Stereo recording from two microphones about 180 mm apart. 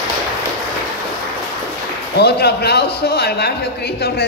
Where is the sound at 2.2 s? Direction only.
65° left (ahead or behind).